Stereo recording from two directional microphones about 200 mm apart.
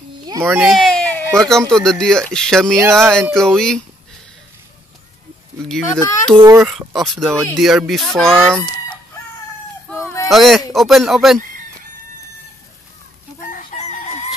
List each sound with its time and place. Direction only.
0.3 s a sound: 10° right (ahead or behind); by 1.2 s 5° left (ahead or behind)
1.7 s speech: 5° left (ahead or behind)
2.7 s a child's voice: 10° right (ahead or behind)
3.0 s speech: 5° left (ahead or behind)
5.7 s speech: centre (ahead or behind)
6.3 s a child's voice: 15° right (ahead or behind)
6.7 s speech: centre (ahead or behind)
9.9 s fowl: 15° left (ahead or behind)
10.3 s speech: centre (ahead or behind)
13.4 s chicken: 40° left (ahead or behind)